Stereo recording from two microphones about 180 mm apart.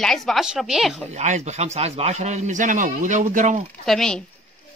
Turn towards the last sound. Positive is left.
turn(degrees=5)  # may be behind; listen again after turning